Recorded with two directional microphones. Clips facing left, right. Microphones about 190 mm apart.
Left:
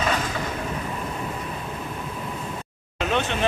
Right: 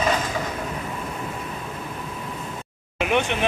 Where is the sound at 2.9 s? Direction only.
15° right (ahead or behind).